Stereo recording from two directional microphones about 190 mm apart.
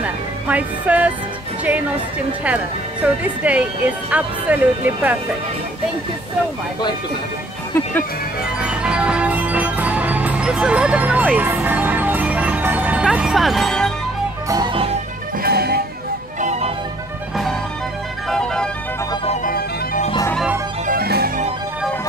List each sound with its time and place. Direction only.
0.0 s music: 10° right (ahead or behind)
3.4 s speech: 5° right (ahead or behind)
8.6 s music: 5° right (ahead or behind)
14.5 s music: 25° right (ahead or behind)
15.4 s music: 55° right (ahead or behind)
16.3 s music: 35° right (ahead or behind)
18.3 s music: 5° left (ahead or behind)
19.4 s music: 45° left (ahead or behind)
20.8 s music: 50° right (ahead or behind)